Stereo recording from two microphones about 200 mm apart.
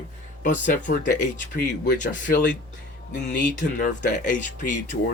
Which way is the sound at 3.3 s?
40° left (ahead or behind).